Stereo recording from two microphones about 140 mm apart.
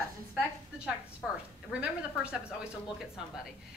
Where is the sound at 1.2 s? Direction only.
Centre (ahead or behind).